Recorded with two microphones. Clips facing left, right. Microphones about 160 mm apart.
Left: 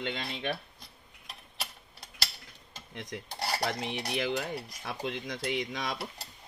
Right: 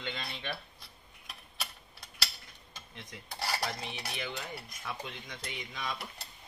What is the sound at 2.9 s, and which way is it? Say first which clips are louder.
Cutlery: left 10 dB; 90° left.